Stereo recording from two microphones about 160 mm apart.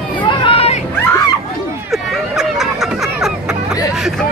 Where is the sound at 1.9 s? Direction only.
Centre (ahead or behind).